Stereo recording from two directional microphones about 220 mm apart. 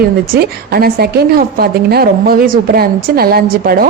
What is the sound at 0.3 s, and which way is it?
A woman's voice, 45° right (ahead or behind).